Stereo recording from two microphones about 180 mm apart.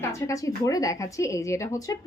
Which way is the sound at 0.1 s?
15° left (ahead or behind).